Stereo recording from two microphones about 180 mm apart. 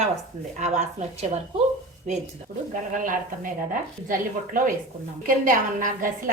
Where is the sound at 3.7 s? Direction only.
50° right (ahead or behind).